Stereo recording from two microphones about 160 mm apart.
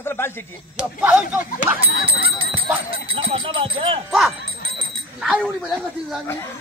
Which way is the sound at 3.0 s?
35° right (ahead or behind).